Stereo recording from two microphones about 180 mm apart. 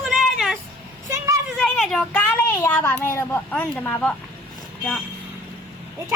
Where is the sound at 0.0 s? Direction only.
Centre (ahead or behind).